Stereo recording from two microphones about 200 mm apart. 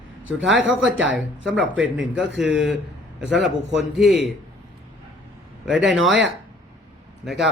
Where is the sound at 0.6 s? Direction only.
Centre (ahead or behind).